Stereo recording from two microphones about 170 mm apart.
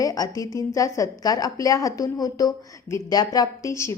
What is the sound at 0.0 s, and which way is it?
A woman's voice, 20° left (ahead or behind).